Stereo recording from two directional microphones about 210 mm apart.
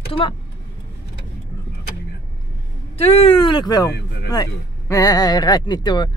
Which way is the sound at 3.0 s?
25° left (ahead or behind).